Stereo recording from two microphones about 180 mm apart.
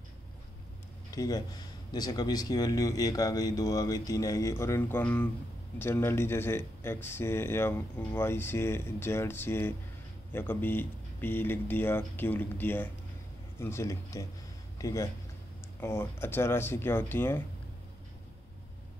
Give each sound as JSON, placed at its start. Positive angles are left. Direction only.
{"t": 1.1, "sound": "speech", "side_deg": 20}